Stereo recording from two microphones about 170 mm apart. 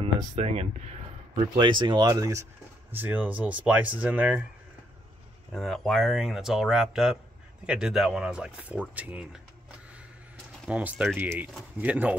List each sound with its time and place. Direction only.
0.0 s speech: 35° right (ahead or behind); by 4.5 s 10° right (ahead or behind)
5.5 s speech: centre (ahead or behind)
10.7 s speech: 10° right (ahead or behind)